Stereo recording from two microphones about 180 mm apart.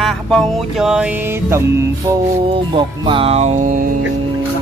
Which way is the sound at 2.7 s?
30° right (ahead or behind).